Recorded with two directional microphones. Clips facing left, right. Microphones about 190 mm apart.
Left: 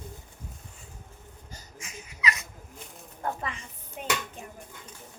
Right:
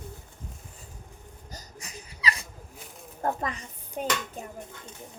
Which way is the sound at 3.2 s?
40° right (ahead or behind).